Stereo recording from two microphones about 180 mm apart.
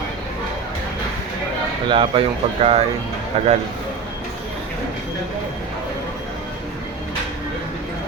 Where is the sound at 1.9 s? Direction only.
30° right (ahead or behind).